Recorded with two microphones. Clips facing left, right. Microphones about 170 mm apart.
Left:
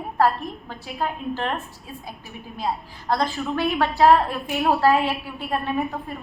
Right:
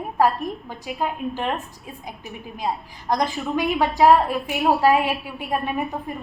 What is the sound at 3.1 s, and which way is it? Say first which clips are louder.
A woman's voice: right 1 dB; 15° right (ahead or behind).